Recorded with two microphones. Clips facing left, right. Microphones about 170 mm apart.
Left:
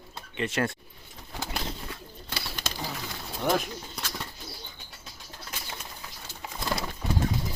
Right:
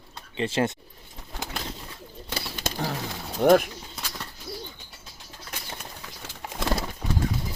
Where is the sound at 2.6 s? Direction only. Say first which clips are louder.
Right 7 dB; 55° right (ahead or behind).